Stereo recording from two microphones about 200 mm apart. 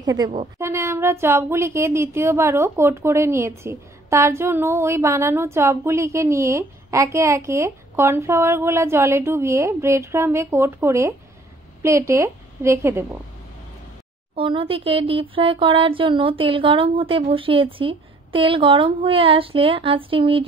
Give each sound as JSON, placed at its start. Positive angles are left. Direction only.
{"t": 0.0, "sound": "a woman's voice", "side_deg": -20}
{"t": 14.3, "sound": "speech", "side_deg": -25}